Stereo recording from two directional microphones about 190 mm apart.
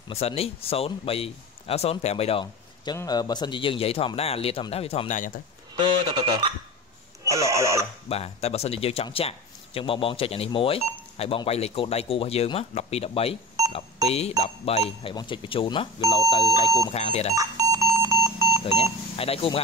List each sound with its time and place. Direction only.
0.1 s speech: 30° left (ahead or behind)
2.4 s speech: 20° left (ahead or behind); by 5.4 s 40° left (ahead or behind)
5.8 s speech: 25° right (ahead or behind)
7.2 s speech: 15° right (ahead or behind)
8.1 s speech: 35° left (ahead or behind)
17.4 s smoke detector: 20° right (ahead or behind)
19.1 s speech: 30° left (ahead or behind)